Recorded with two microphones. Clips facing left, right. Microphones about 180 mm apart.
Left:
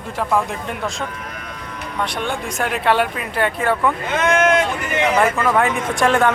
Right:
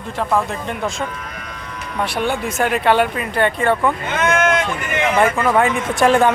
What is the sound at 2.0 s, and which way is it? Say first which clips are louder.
Speech: right 4 dB; 5° right (ahead or behind).